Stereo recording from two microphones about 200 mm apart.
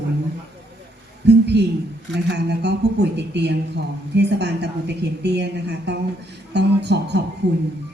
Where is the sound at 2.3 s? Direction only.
55° right (ahead or behind).